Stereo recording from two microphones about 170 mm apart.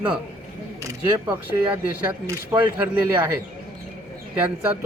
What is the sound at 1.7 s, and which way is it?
Speech, 15° right (ahead or behind).